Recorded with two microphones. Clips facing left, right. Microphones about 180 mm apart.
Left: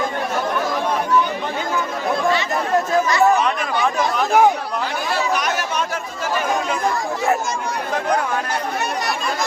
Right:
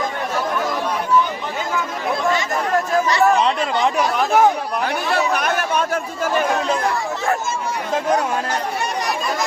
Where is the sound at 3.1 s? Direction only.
30° right (ahead or behind).